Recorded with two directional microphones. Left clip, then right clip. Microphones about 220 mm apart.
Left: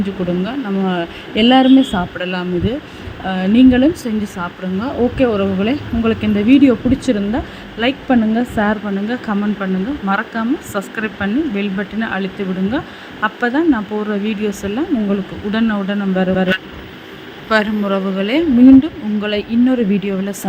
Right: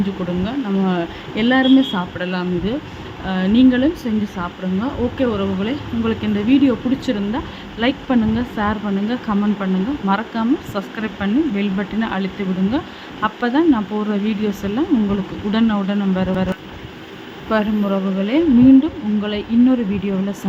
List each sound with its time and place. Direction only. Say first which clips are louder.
0.4 s speech: left 1 dB; 10° left (ahead or behind)
17.5 s speech: left 4 dB; 20° left (ahead or behind)